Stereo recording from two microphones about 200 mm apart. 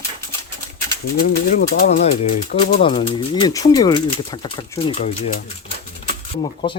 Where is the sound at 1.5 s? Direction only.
40° left (ahead or behind).